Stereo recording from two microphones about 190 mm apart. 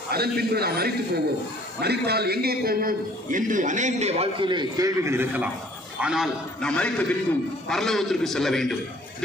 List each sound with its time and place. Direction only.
0.1 s a man's voice: 55° right (ahead or behind); by 8.7 s centre (ahead or behind)